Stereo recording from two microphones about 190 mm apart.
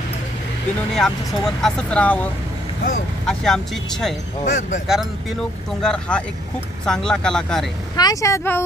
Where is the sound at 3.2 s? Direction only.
Centre (ahead or behind).